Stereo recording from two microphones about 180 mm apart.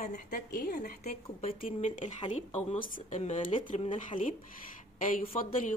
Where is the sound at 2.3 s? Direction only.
45° left (ahead or behind).